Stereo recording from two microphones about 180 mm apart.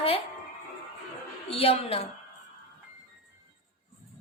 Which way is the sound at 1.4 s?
35° left (ahead or behind).